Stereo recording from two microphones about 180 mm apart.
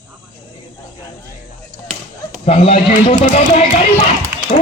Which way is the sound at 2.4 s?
35° left (ahead or behind).